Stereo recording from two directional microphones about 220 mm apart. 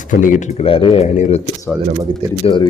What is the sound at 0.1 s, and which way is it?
Speech, 35° left (ahead or behind).